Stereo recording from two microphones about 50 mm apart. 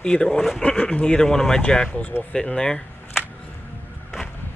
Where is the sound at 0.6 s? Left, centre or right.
Left.